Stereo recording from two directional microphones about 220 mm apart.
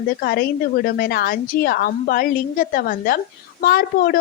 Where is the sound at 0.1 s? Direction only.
45° left (ahead or behind).